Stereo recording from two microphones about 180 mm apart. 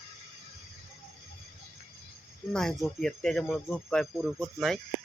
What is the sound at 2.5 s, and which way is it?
Speech, 5° left (ahead or behind).